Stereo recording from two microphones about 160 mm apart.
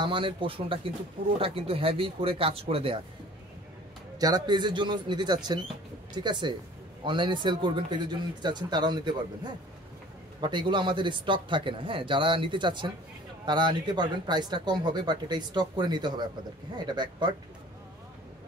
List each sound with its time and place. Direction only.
0.0 s speech: 30° right (ahead or behind)
4.2 s speech: 25° right (ahead or behind)